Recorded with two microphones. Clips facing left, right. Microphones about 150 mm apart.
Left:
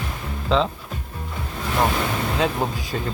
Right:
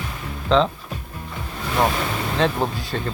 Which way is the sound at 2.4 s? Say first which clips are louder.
Right 4 dB; 5° left (ahead or behind).